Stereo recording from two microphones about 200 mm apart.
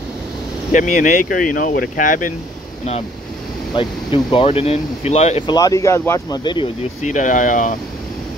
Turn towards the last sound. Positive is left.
turn(degrees=40)  # may be behind; listen again after turning